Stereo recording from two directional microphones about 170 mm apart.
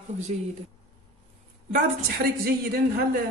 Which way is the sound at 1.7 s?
55° right (ahead or behind).